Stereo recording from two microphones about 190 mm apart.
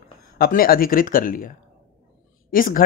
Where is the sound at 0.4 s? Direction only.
50° left (ahead or behind).